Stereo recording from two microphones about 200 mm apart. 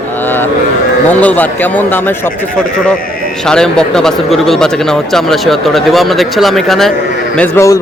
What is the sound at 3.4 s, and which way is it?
A man's voice, 5° left (ahead or behind).